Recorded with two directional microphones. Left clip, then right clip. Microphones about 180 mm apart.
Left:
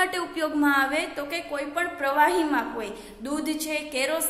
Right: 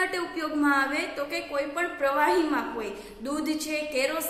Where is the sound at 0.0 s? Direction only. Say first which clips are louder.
Left 3 dB; 40° left (ahead or behind).